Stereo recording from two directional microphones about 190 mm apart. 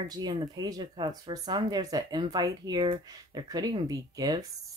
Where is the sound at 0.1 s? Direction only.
20° right (ahead or behind).